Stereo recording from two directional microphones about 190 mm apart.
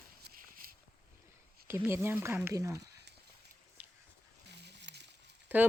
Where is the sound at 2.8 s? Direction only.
60° right (ahead or behind).